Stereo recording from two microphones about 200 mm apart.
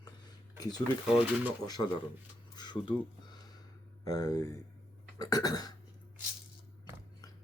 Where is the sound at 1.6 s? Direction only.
20° left (ahead or behind).